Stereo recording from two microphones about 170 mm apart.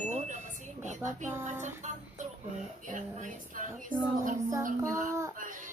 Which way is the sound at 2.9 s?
50° right (ahead or behind).